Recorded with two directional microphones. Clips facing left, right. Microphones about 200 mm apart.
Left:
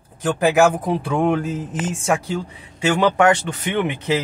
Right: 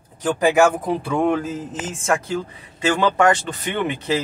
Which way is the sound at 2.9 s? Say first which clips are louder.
Left 3 dB; 10° left (ahead or behind).